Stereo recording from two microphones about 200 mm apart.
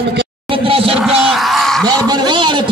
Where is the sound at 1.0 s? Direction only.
Centre (ahead or behind).